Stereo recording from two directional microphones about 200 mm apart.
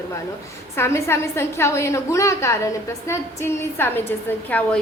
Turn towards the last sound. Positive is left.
turn(degrees=10)  # may be behind; listen again after turning